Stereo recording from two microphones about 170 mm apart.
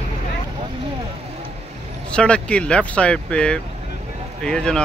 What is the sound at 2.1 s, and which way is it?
Speech, 5° left (ahead or behind).